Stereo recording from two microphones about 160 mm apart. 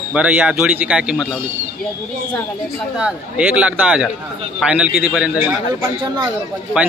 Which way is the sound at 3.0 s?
5° right (ahead or behind).